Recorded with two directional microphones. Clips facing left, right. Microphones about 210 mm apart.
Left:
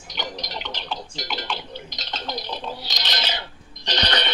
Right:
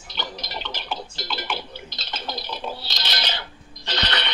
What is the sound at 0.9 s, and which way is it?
Music, 15° left (ahead or behind).